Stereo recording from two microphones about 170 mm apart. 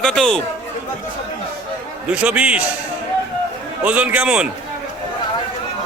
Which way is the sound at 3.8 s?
10° right (ahead or behind).